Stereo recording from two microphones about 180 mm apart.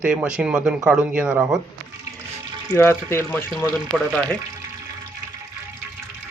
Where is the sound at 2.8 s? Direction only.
10° left (ahead or behind).